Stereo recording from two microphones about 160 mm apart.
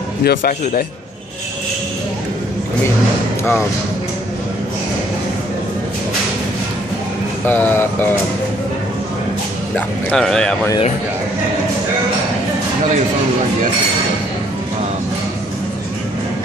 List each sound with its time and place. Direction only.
0.2 s speech: 70° left (ahead or behind)
7.4 s speech: 10° left (ahead or behind)
9.8 s speech: 5° left (ahead or behind)